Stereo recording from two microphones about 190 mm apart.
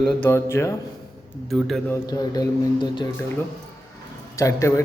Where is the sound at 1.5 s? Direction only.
Centre (ahead or behind).